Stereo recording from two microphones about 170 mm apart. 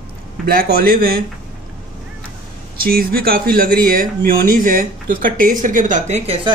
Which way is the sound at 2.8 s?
60° right (ahead or behind).